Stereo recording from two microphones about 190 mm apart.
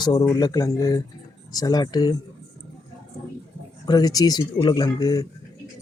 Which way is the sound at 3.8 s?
20° left (ahead or behind).